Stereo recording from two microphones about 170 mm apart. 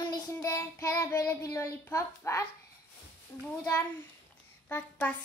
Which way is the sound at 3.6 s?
15° left (ahead or behind).